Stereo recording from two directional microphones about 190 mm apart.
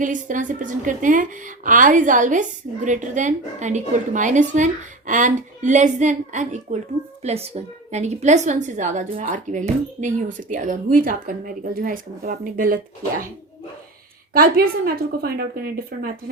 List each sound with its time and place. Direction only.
0.0 s a woman's voice: 45° right (ahead or behind)
14.3 s a woman's voice: 50° right (ahead or behind)